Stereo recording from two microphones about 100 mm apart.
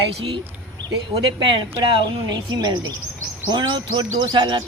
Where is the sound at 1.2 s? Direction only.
55° right (ahead or behind).